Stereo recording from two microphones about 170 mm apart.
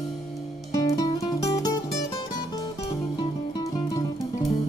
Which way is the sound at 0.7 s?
20° left (ahead or behind).